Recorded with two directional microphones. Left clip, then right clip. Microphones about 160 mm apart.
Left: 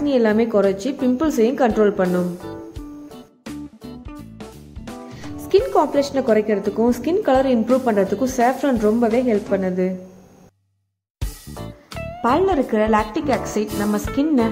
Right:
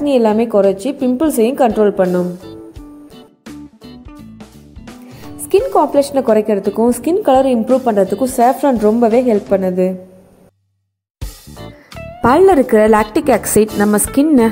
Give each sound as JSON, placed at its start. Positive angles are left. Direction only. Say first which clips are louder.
{"t": 0.0, "sound": "a woman's voice", "louder": "right 5 dB", "side_deg": -20}
{"t": 3.8, "sound": "music", "louder": "right 1 dB", "side_deg": 0}
{"t": 5.6, "sound": "a woman's voice", "louder": "right 5 dB", "side_deg": -15}
{"t": 11.1, "sound": "music", "louder": "right 1 dB", "side_deg": 0}
{"t": 12.2, "sound": "a woman's voice", "louder": "right 8 dB", "side_deg": -30}